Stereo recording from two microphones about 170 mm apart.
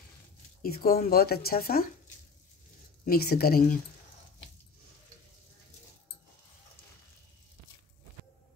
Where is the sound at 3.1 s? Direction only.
65° left (ahead or behind).